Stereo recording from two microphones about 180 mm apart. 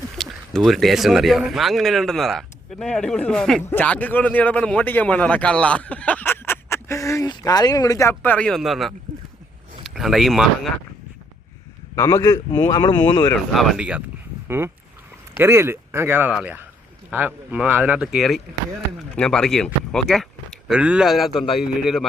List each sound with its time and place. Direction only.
0.2 s speech: centre (ahead or behind)
11.9 s a man's voice: 20° left (ahead or behind)
13.5 s speech: centre (ahead or behind)